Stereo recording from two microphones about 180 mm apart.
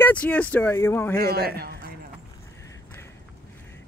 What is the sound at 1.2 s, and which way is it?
Speech, 60° right (ahead or behind).